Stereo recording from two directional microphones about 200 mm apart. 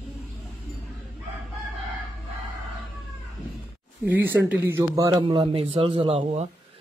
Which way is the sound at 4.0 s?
10° right (ahead or behind).